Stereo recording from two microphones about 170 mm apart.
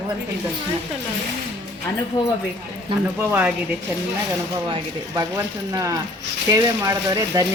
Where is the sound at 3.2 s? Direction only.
10° right (ahead or behind).